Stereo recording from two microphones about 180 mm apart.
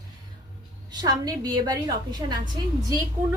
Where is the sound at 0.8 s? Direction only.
20° right (ahead or behind).